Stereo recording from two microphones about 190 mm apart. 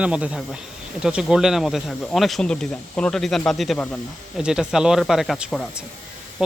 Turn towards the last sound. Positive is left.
turn(degrees=-5)  # may be behind; listen again after turning